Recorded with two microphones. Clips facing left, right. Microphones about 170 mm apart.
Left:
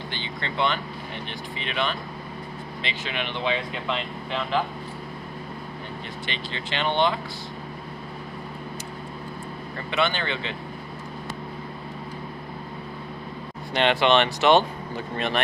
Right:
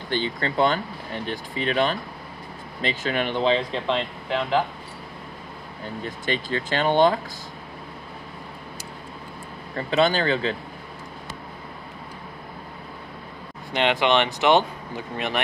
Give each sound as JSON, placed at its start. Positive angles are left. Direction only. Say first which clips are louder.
{"t": 0.1, "sound": "speech", "louder": "right 12 dB", "side_deg": -40}
{"t": 3.5, "sound": "speech", "louder": "right 5 dB", "side_deg": -30}
{"t": 6.0, "sound": "speech", "louder": "right 11 dB", "side_deg": -45}
{"t": 9.8, "sound": "speech", "louder": "right 5 dB", "side_deg": -35}
{"t": 13.7, "sound": "speech", "louder": "left 1 dB", "side_deg": -15}